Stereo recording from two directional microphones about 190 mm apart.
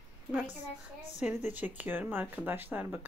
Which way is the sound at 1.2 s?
10° right (ahead or behind).